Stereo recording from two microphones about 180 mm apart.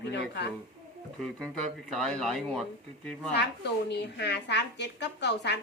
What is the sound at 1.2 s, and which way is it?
Speech, 5° left (ahead or behind).